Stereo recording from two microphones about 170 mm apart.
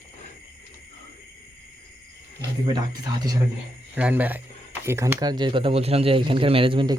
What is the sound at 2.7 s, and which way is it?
Speech, 25° right (ahead or behind).